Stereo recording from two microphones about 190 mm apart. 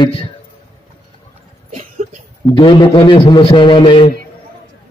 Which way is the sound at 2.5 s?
25° left (ahead or behind).